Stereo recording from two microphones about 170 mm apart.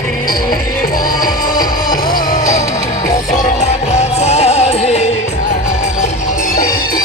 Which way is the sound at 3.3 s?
40° left (ahead or behind).